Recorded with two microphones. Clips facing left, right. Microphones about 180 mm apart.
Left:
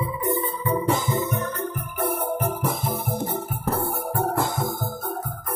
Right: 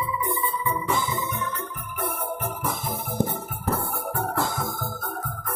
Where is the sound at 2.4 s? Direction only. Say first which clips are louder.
Left 4 dB; 35° left (ahead or behind).